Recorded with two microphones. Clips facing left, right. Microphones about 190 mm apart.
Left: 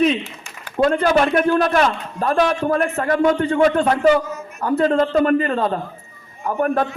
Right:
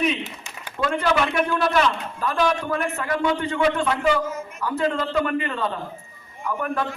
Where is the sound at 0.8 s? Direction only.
45° left (ahead or behind).